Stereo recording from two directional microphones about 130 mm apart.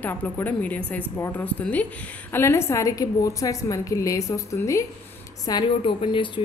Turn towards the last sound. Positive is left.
turn(degrees=40)  # may be behind; listen again after turning